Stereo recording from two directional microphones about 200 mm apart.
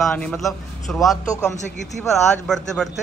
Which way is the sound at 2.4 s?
5° left (ahead or behind).